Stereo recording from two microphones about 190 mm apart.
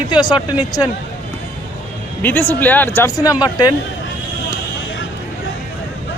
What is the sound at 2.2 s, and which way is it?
Speech, 10° left (ahead or behind).